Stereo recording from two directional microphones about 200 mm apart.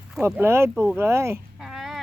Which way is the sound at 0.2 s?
10° right (ahead or behind).